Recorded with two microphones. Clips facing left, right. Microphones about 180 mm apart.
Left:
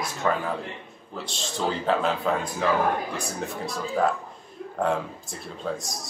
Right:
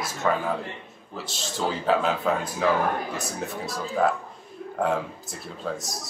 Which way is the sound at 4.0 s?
Centre (ahead or behind).